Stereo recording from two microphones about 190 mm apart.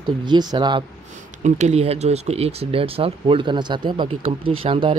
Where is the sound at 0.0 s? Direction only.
25° right (ahead or behind).